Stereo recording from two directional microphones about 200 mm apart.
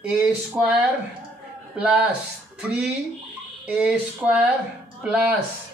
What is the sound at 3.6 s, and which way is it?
Speech, 5° right (ahead or behind).